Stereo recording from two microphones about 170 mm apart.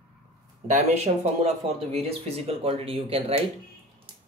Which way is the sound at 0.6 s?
45° right (ahead or behind).